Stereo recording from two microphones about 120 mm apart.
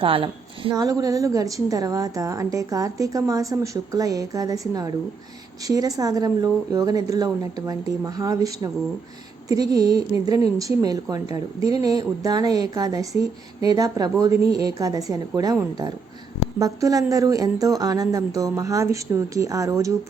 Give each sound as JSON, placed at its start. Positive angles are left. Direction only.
{"t": 0.0, "sound": "a woman's voice", "side_deg": -45}
{"t": 0.8, "sound": "a woman's voice", "side_deg": -30}
{"t": 16.6, "sound": "a woman's voice", "side_deg": -30}